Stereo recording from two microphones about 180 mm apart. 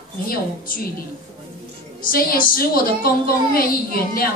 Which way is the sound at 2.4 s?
55° left (ahead or behind).